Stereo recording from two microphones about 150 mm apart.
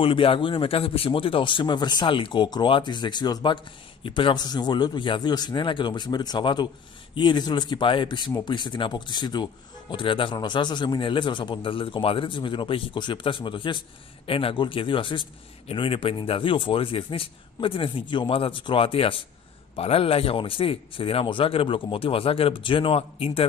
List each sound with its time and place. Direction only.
0.0 s speech: 35° left (ahead or behind)